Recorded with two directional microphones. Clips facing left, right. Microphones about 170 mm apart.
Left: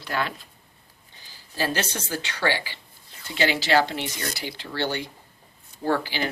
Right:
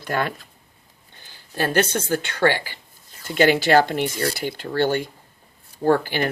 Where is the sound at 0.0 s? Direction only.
50° right (ahead or behind).